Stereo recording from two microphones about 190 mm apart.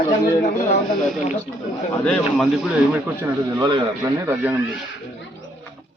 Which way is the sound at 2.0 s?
5° left (ahead or behind).